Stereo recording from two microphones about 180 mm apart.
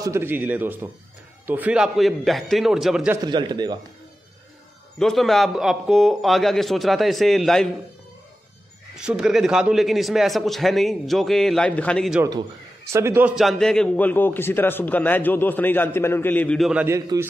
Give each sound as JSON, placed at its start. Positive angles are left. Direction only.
{"t": 0.0, "sound": "a man's voice", "side_deg": -15}
{"t": 3.3, "sound": "a man's voice", "side_deg": -25}
{"t": 4.9, "sound": "a man's voice", "side_deg": 0}
{"t": 8.9, "sound": "a man's voice", "side_deg": -5}
{"t": 12.9, "sound": "a man's voice", "side_deg": -15}
{"t": 13.4, "sound": "a man's voice", "side_deg": 0}
{"t": 16.8, "sound": "a man's voice", "side_deg": -15}